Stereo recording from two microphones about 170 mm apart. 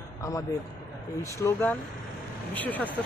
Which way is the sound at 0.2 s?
20° left (ahead or behind).